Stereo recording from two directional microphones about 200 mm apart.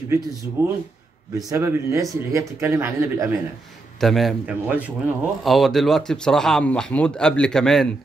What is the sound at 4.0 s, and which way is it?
A man's voice, centre (ahead or behind).